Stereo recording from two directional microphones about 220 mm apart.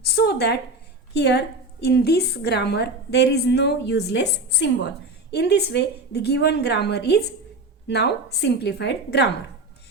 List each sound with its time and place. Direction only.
0.2 s a woman's voice: 50° left (ahead or behind)